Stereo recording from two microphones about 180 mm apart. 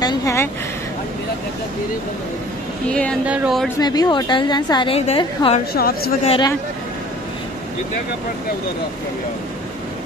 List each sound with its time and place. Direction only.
0.0 s a sound: 15° left (ahead or behind)
2.9 s speech: 5° left (ahead or behind)
3.8 s a woman's voice: 20° left (ahead or behind)
5.7 s speech: 60° left (ahead or behind)
6.2 s a woman's voice: 30° left (ahead or behind)